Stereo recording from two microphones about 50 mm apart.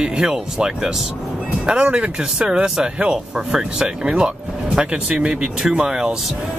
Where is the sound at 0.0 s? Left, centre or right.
Centre.